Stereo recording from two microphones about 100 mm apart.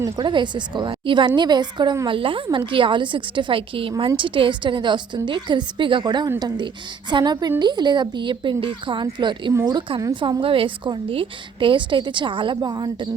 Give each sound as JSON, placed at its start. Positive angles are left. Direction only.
{"t": 0.0, "sound": "a woman's voice", "side_deg": -50}
{"t": 2.0, "sound": "a woman's voice", "side_deg": -60}
{"t": 12.5, "sound": "a woman's voice", "side_deg": -45}